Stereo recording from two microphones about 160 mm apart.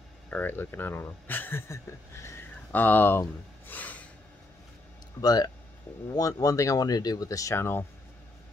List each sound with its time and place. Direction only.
0.3 s speech: 10° left (ahead or behind)
5.2 s speech: 25° left (ahead or behind)